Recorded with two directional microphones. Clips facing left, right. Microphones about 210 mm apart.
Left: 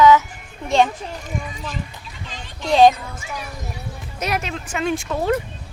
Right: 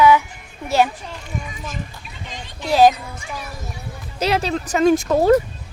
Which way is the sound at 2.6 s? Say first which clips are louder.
Left 1 dB; 5° right (ahead or behind).